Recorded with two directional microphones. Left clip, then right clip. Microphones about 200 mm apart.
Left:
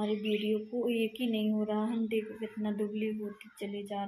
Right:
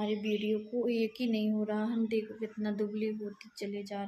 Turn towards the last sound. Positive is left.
turn(degrees=0)  # may be behind; listen again after turning